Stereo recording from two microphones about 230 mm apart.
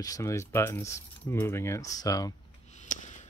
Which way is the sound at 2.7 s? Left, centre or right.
Left.